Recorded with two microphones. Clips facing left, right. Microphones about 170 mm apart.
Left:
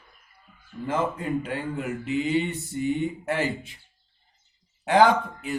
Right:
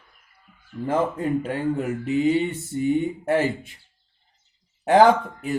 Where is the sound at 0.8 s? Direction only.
45° right (ahead or behind).